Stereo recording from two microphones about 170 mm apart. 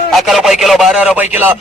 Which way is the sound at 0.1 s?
Centre (ahead or behind).